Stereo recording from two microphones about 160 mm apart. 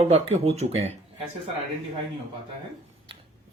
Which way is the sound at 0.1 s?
45° right (ahead or behind).